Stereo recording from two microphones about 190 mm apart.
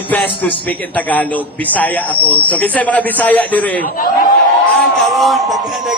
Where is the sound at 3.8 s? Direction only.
50° left (ahead or behind).